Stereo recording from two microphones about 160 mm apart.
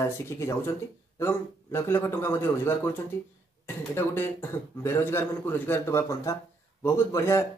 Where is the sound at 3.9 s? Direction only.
15° left (ahead or behind).